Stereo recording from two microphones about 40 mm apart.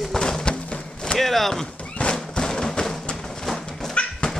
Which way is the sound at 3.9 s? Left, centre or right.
Left.